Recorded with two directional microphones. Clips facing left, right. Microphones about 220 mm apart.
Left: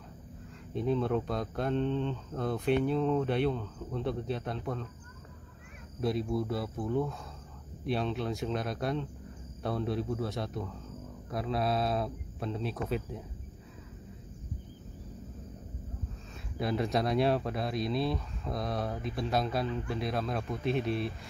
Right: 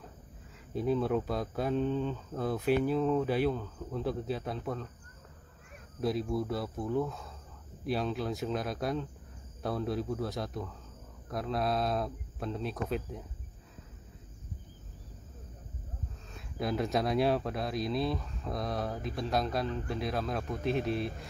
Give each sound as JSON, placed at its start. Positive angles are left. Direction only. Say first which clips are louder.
{"t": 0.7, "sound": "speech", "louder": "even", "side_deg": -5}
{"t": 5.9, "sound": "speech", "louder": "even", "side_deg": 0}
{"t": 16.5, "sound": "speech", "louder": "left 1 dB", "side_deg": 0}